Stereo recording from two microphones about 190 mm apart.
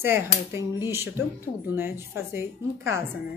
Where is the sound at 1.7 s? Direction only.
10° right (ahead or behind).